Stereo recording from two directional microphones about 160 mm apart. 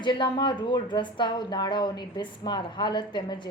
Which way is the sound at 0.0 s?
30° left (ahead or behind).